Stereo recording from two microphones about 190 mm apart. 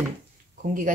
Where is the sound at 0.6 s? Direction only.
45° right (ahead or behind).